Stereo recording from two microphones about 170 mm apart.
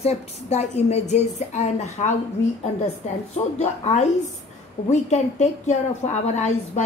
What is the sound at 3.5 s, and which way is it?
A woman's voice, 40° left (ahead or behind).